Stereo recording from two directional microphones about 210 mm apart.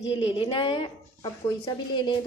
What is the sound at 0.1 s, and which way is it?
A woman's voice, 25° left (ahead or behind).